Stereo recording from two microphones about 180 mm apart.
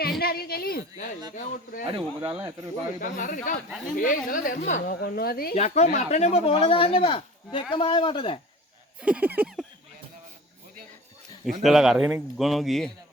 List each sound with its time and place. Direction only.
0.2 s a woman's voice: 60° left (ahead or behind)
1.9 s speech: 30° right (ahead or behind)
2.3 s speech: 10° right (ahead or behind)
3.0 s a woman's voice: 45° left (ahead or behind)
5.5 s speech: 35° left (ahead or behind)
9.0 s a sound: 5° right (ahead or behind)
11.6 s a man's voice: centre (ahead or behind)